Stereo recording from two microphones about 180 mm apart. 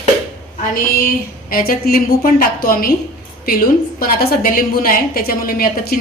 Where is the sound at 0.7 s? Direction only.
55° left (ahead or behind).